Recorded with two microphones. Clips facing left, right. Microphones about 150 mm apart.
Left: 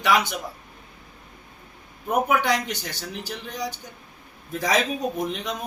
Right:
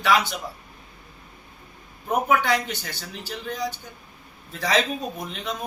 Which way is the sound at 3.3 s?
10° left (ahead or behind).